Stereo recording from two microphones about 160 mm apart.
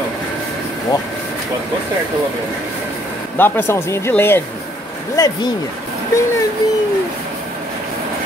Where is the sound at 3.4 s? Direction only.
15° left (ahead or behind).